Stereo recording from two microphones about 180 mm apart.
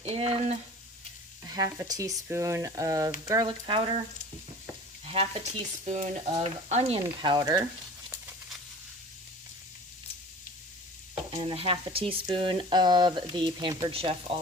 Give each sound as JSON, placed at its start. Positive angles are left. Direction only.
{"t": 0.0, "sound": "stir", "side_deg": -35}
{"t": 1.5, "sound": "speech", "side_deg": -20}
{"t": 5.0, "sound": "stir", "side_deg": -35}
{"t": 7.0, "sound": "speech", "side_deg": -25}
{"t": 11.1, "sound": "speech", "side_deg": -35}